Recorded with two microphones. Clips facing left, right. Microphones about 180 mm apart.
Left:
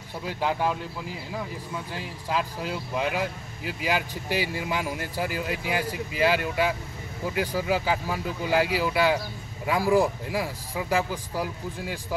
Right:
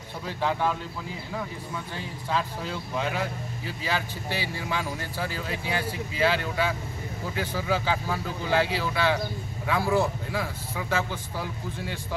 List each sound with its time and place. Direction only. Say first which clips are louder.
2.0 s speech: even; 5° left (ahead or behind)